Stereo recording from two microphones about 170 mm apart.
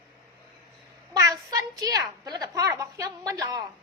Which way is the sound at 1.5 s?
20° right (ahead or behind).